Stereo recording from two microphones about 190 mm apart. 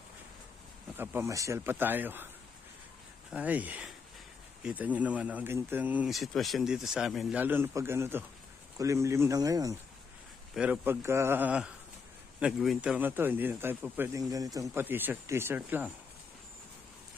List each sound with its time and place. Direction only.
0.9 s speech: 10° right (ahead or behind)
3.3 s speech: 10° right (ahead or behind)
10.5 s speech: 5° right (ahead or behind)